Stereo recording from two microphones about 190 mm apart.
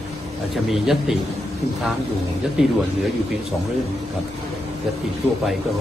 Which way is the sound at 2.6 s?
5° right (ahead or behind).